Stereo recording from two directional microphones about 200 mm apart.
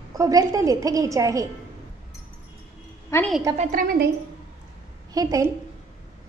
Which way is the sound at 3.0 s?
10° left (ahead or behind).